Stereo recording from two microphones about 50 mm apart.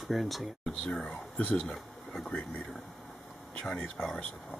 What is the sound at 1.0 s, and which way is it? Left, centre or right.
Speech, left.